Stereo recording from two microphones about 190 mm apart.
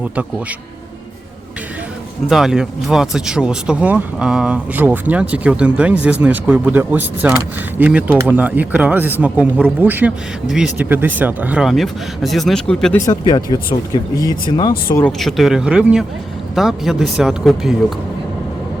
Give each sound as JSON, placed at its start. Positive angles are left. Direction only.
{"t": 0.0, "sound": "speech", "side_deg": -5}
{"t": 2.3, "sound": "speech", "side_deg": 0}
{"t": 13.1, "sound": "speech", "side_deg": 20}
{"t": 14.9, "sound": "speech", "side_deg": 5}